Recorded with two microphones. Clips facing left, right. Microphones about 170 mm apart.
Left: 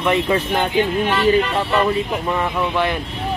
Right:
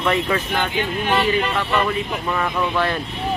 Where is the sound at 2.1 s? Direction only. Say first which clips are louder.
Left 2 dB; 20° left (ahead or behind).